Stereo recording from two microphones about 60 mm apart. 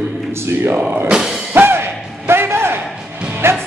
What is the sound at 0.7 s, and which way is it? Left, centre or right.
Speech, centre.